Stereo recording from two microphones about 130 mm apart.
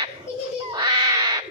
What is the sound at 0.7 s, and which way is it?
Cat, 30° right (ahead or behind).